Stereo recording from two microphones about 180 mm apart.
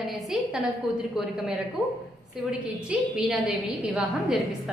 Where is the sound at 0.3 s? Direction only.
5° right (ahead or behind).